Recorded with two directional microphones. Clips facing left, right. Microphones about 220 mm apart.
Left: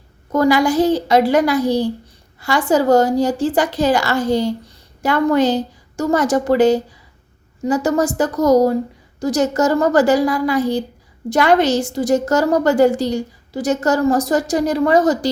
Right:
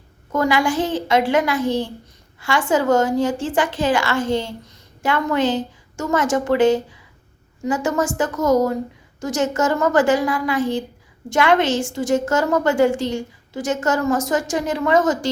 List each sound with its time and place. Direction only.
0.3 s a woman's voice: 40° left (ahead or behind)